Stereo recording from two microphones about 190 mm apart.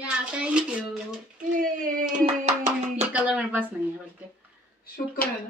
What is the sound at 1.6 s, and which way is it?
Hands, 45° right (ahead or behind).